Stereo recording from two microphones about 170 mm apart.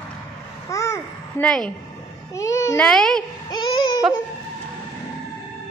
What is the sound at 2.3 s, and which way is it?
Speech, 20° left (ahead or behind).